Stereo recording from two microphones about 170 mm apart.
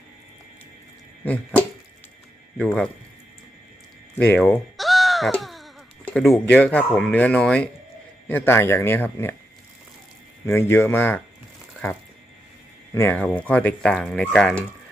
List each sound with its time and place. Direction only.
1.2 s dog: 10° left (ahead or behind)
4.2 s speech: 10° left (ahead or behind)
4.8 s bleat: centre (ahead or behind)
6.5 s speech: 10° left (ahead or behind)
10.4 s speech: 15° left (ahead or behind)
12.9 s speech: 15° left (ahead or behind)